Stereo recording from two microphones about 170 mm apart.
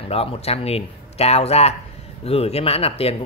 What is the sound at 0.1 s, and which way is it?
Speech, 35° left (ahead or behind).